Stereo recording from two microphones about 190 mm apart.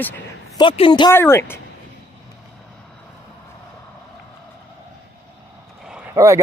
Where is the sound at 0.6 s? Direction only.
25° left (ahead or behind).